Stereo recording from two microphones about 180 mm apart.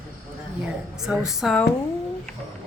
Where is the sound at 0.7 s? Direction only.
5° right (ahead or behind).